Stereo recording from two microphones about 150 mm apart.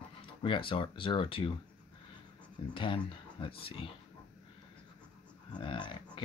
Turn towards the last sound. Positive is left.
turn(degrees=30)  # may be behind; listen again after turning